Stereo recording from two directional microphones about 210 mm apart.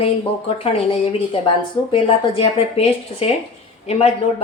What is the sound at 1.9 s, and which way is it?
Speech, 25° left (ahead or behind).